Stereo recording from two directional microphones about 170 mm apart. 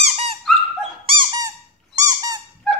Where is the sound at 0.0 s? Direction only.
35° right (ahead or behind).